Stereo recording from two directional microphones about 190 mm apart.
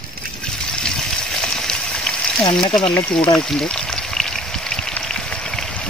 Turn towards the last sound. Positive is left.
turn(degrees=5)  # may be behind; listen again after turning